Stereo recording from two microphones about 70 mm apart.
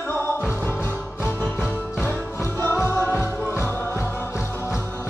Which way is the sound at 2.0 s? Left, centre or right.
Left.